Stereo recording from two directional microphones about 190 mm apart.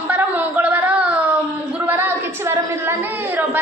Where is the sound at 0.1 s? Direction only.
10° right (ahead or behind).